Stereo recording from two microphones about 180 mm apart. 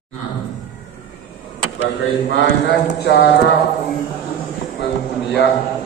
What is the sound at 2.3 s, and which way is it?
Speech, 75° left (ahead or behind).